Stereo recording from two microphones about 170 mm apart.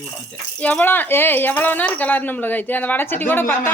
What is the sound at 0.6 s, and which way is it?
Speech, 10° left (ahead or behind).